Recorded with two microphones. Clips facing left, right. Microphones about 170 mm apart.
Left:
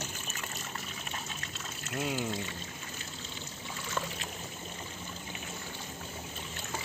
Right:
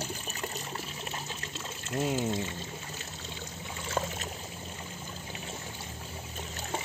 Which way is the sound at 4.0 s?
35° right (ahead or behind).